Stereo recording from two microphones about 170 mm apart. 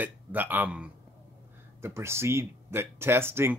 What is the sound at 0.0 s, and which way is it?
Speech, 10° right (ahead or behind).